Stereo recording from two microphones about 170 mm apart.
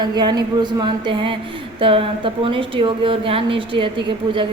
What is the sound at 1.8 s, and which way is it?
A woman's voice, 30° right (ahead or behind).